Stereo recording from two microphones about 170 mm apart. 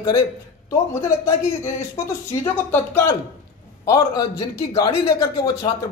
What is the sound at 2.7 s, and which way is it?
A man's voice, 15° left (ahead or behind).